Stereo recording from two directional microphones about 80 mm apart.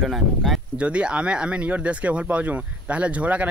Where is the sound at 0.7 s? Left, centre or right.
Centre.